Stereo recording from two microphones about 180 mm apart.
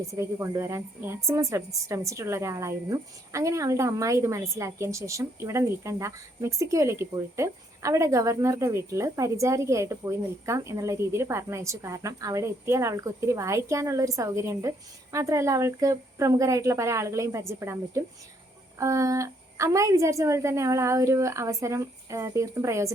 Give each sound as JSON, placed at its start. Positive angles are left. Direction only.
{"t": 0.1, "sound": "a woman's voice", "side_deg": -15}